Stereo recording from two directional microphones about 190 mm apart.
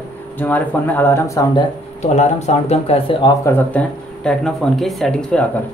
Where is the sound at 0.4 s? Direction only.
10° left (ahead or behind).